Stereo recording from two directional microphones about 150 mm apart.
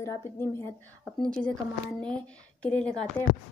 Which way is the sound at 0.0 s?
20° left (ahead or behind).